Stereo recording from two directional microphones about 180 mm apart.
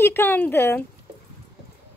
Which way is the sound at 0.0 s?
10° left (ahead or behind).